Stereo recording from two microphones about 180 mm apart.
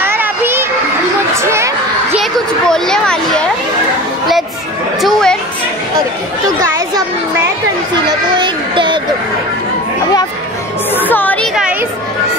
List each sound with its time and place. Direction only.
0.0 s children playing: 10° right (ahead or behind)
1.3 s a sound: 15° right (ahead or behind)
2.1 s a sound: centre (ahead or behind)
5.0 s chatter: 5° left (ahead or behind)
7.9 s speech: 25° right (ahead or behind)
11.0 s speech: 10° left (ahead or behind)